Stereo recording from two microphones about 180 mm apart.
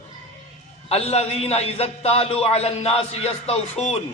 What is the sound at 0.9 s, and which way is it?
A man's voice, 35° left (ahead or behind).